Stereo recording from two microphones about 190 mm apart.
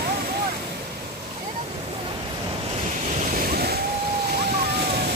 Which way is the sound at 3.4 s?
55° right (ahead or behind).